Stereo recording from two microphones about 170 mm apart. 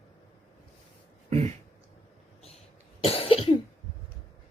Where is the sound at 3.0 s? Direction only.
35° left (ahead or behind).